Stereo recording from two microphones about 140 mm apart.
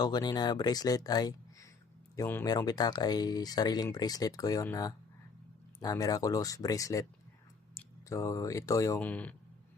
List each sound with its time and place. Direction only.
0.0 s speech: 30° left (ahead or behind)
9.0 s speech: 10° left (ahead or behind)